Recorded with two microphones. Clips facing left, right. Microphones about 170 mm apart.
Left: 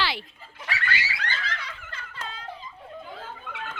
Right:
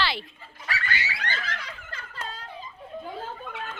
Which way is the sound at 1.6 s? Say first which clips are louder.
Even; 40° right (ahead or behind).